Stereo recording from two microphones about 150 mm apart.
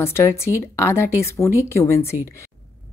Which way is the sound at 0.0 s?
15° left (ahead or behind).